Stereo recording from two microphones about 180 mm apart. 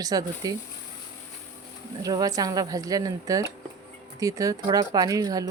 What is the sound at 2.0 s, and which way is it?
Speech, 20° right (ahead or behind).